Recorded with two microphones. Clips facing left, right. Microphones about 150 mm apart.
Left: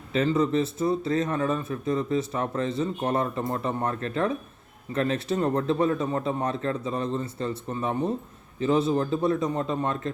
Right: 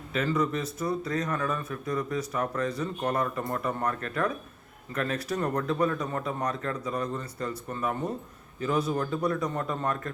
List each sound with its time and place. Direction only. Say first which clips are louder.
0.1 s speech: left 4 dB; 30° left (ahead or behind)